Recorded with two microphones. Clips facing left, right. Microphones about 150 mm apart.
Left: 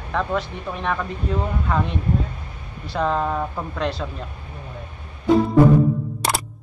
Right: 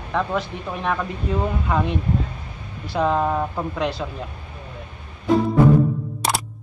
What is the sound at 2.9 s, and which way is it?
Speech, 5° right (ahead or behind).